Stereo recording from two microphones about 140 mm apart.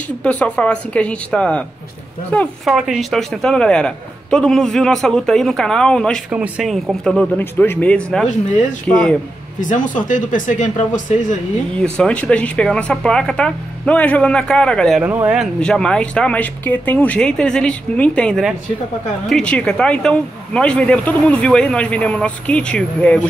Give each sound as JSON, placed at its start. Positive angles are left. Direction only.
{"t": 0.2, "sound": "speech", "side_deg": 10}
{"t": 2.6, "sound": "a man's voice", "side_deg": 0}
{"t": 6.3, "sound": "a man's voice", "side_deg": -10}
{"t": 8.3, "sound": "speech", "side_deg": 60}
{"t": 8.8, "sound": "speech", "side_deg": 5}
{"t": 9.6, "sound": "speech", "side_deg": 65}
{"t": 11.8, "sound": "speech", "side_deg": 5}
{"t": 15.0, "sound": "speech", "side_deg": -10}
{"t": 15.6, "sound": "speech", "side_deg": 5}